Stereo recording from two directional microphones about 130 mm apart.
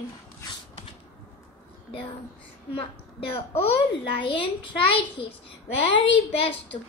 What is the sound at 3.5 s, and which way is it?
A child's voice, 45° left (ahead or behind).